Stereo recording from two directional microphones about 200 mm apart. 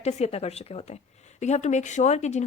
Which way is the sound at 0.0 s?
35° left (ahead or behind).